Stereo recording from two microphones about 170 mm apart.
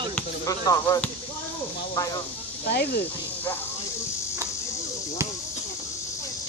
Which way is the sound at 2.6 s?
70° left (ahead or behind).